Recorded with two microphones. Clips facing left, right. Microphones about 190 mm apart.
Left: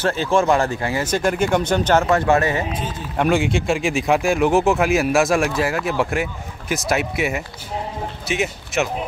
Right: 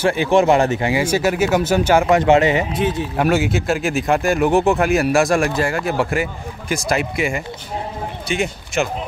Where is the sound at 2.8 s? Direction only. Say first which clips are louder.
Right 9 dB; 70° right (ahead or behind).